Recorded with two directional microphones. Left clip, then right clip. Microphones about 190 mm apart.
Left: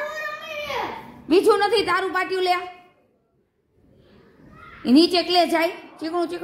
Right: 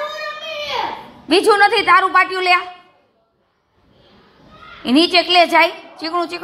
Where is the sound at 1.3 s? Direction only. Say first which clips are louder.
Right 5 dB; centre (ahead or behind).